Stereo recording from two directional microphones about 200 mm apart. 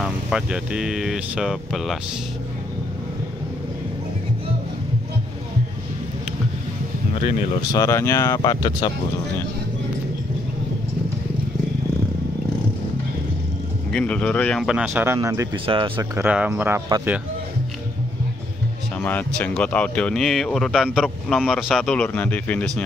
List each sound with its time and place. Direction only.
0.0 s speech: 5° right (ahead or behind)
7.7 s speech: 15° left (ahead or behind)
13.9 s speech: 5° left (ahead or behind)
15.0 s speech: 15° right (ahead or behind)
16.2 s speech: 5° right (ahead or behind)
18.9 s speech: 5° left (ahead or behind)